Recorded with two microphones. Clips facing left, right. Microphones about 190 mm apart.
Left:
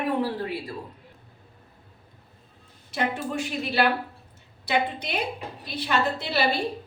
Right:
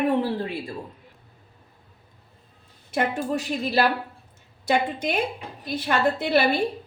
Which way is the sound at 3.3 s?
35° right (ahead or behind).